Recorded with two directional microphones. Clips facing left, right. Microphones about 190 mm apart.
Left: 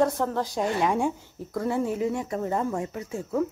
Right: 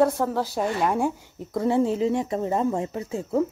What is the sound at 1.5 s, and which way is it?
Speech, 25° right (ahead or behind).